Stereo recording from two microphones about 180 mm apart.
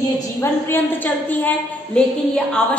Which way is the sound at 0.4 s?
10° left (ahead or behind).